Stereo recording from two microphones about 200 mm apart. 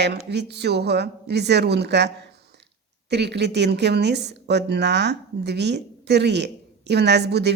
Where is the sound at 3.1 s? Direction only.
60° right (ahead or behind).